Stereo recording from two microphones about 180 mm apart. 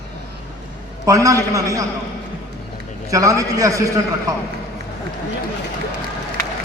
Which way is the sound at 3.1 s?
20° right (ahead or behind).